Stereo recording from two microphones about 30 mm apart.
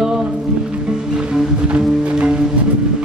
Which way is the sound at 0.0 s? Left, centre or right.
Right.